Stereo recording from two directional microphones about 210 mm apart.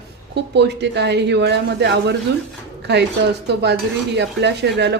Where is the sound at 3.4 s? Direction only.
55° right (ahead or behind).